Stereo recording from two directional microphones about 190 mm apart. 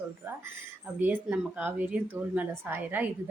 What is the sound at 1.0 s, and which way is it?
A woman's voice, 10° right (ahead or behind).